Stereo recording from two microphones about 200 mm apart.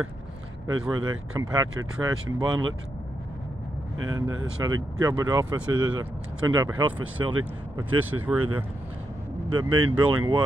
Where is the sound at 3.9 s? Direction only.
90° right.